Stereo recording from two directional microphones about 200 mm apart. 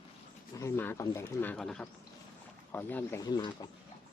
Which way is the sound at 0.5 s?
10° left (ahead or behind).